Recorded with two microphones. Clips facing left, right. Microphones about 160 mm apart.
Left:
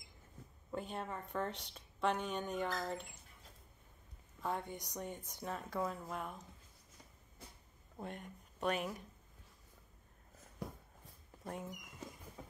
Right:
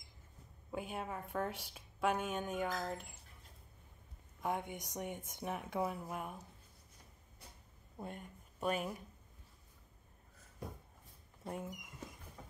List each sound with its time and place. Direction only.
0.7 s speech: 5° right (ahead or behind)
4.4 s a woman's voice: 15° right (ahead or behind)
8.0 s speech: 5° right (ahead or behind)
11.4 s a woman's voice: 10° right (ahead or behind)